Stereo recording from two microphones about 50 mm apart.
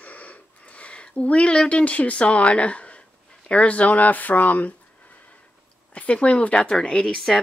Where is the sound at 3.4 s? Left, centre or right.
Left.